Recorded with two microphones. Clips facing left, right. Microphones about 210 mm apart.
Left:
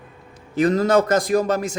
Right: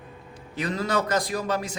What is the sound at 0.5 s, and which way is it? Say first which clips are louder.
A man's voice: left 10 dB; 45° left (ahead or behind).